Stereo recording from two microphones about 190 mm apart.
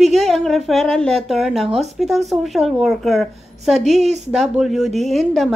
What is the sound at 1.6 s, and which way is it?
Speech, 35° right (ahead or behind).